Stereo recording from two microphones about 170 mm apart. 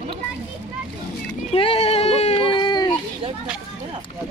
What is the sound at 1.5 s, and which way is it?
Speech, 35° left (ahead or behind).